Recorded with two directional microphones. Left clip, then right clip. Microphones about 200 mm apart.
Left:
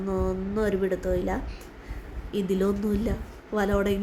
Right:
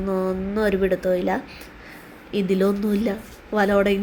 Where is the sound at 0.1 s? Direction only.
10° right (ahead or behind).